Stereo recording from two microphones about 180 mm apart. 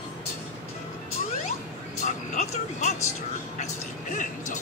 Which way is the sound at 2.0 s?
40° left (ahead or behind).